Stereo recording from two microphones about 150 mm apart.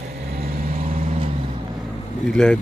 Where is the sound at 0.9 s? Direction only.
40° right (ahead or behind).